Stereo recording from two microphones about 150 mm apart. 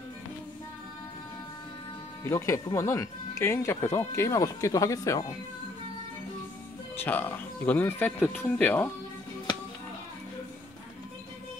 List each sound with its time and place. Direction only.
2.2 s speech: 20° left (ahead or behind)
7.0 s speech: 10° left (ahead or behind)